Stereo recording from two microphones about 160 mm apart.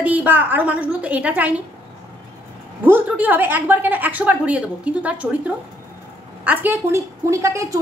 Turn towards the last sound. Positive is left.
turn(degrees=-20)  # may be behind; listen again after turning